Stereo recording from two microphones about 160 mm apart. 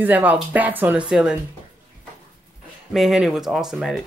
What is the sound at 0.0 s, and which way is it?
Speech, 10° right (ahead or behind).